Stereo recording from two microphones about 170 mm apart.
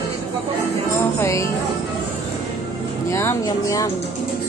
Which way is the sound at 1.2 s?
15° left (ahead or behind).